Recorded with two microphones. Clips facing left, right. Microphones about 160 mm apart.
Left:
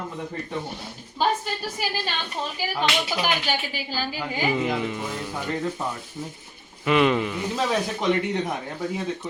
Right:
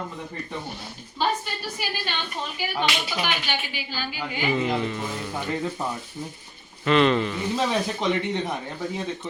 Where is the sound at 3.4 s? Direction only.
40° left (ahead or behind).